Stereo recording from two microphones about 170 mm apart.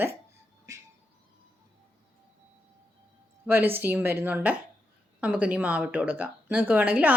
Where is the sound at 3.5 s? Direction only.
10° right (ahead or behind).